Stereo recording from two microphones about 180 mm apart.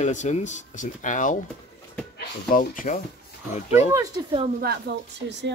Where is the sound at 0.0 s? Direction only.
40° left (ahead or behind).